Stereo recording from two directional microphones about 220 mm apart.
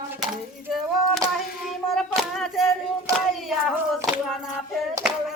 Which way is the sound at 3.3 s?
Centre (ahead or behind).